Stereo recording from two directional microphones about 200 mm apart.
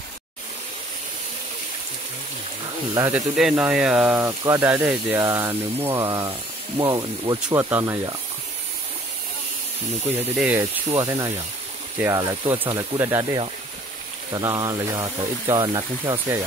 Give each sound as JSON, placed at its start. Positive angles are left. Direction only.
{"t": 2.9, "sound": "speech", "side_deg": -15}
{"t": 3.3, "sound": "speech", "side_deg": -5}
{"t": 10.3, "sound": "speech", "side_deg": -5}
{"t": 10.6, "sound": "speech", "side_deg": -15}